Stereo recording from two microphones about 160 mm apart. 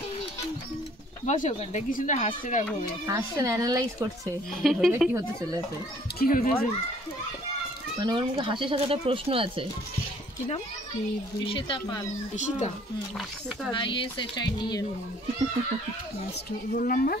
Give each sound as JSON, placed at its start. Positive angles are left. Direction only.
{"t": 1.2, "sound": "speech", "side_deg": 50}
{"t": 3.1, "sound": "speech", "side_deg": -20}
{"t": 4.6, "sound": "a woman's voice", "side_deg": -5}
{"t": 6.1, "sound": "speech", "side_deg": 60}
{"t": 8.0, "sound": "speech", "side_deg": -30}
{"t": 11.4, "sound": "speech", "side_deg": 35}
{"t": 12.4, "sound": "speech", "side_deg": 50}
{"t": 13.7, "sound": "speech", "side_deg": 30}
{"t": 16.7, "sound": "speech", "side_deg": 60}